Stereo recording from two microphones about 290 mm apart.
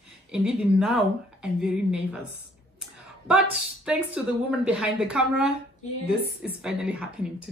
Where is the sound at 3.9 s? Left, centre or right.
Centre.